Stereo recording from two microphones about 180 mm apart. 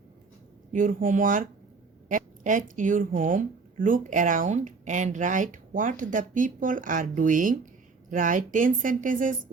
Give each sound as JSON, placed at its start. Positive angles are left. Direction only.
{"t": 0.7, "sound": "speech", "side_deg": -45}